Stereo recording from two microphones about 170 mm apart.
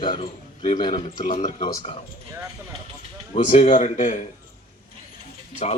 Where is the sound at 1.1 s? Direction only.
50° left (ahead or behind).